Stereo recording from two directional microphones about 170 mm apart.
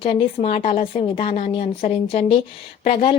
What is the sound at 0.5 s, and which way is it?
Speech, 50° left (ahead or behind).